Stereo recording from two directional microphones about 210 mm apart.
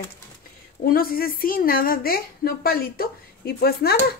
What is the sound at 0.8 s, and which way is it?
A woman's voice, 45° left (ahead or behind).